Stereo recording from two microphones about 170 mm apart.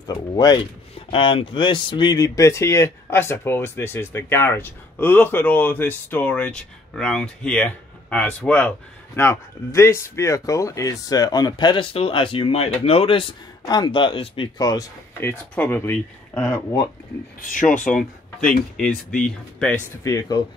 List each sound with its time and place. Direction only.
0.0 s speech: 25° left (ahead or behind); by 16.6 s 5° left (ahead or behind)
17.4 s speech: 50° left (ahead or behind)
18.4 s speech: 5° left (ahead or behind)
20.0 s speech: 20° left (ahead or behind)